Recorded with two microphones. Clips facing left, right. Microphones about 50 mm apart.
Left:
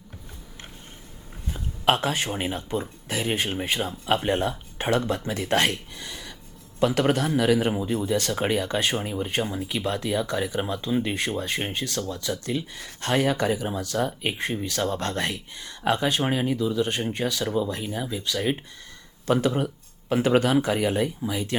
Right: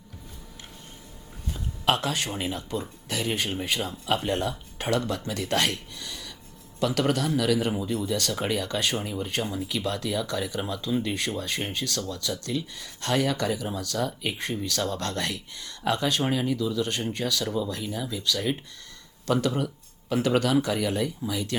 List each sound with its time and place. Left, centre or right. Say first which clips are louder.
1.5 s speech: left 3 dB; left